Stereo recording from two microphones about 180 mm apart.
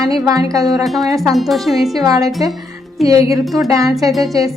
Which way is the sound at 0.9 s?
Centre (ahead or behind).